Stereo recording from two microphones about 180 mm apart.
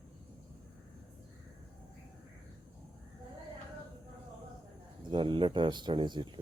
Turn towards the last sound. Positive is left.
turn(degrees=-25)  # may be behind; listen again after turning